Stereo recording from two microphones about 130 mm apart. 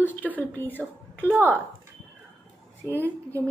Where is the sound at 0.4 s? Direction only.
15° left (ahead or behind).